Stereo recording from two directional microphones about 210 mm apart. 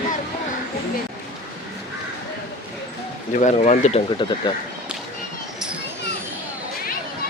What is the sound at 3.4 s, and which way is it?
Speech, 35° left (ahead or behind).